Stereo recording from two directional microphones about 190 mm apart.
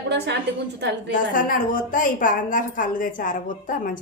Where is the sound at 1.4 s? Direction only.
45° left (ahead or behind).